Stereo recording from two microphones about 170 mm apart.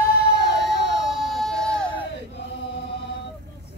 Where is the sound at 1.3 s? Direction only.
5° left (ahead or behind).